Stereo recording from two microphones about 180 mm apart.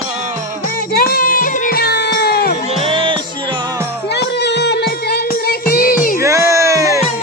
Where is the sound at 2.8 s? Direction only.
30° right (ahead or behind).